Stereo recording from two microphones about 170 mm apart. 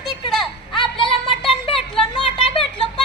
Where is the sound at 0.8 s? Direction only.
30° left (ahead or behind).